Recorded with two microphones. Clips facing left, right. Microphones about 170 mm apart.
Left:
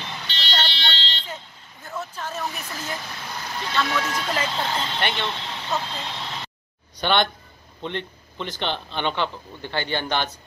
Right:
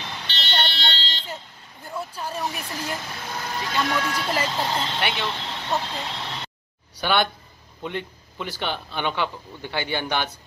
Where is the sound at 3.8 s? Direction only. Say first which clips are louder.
Even; 15° right (ahead or behind).